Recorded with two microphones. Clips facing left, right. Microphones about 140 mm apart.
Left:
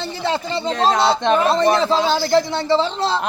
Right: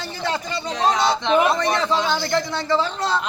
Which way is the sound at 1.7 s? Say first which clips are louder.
Left 4 dB; 30° left (ahead or behind).